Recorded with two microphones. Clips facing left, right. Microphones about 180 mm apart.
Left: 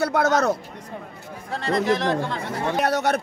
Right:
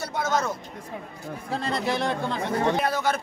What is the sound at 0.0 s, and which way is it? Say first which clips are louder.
Speech: left 7 dB; 70° left (ahead or behind).